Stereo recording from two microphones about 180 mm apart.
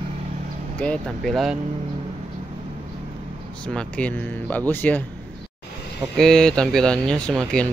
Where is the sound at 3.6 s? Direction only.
5° left (ahead or behind).